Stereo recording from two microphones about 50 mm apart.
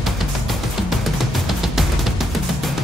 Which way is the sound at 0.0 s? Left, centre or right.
Centre.